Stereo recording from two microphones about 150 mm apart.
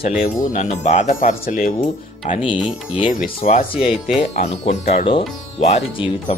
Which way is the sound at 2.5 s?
35° left (ahead or behind).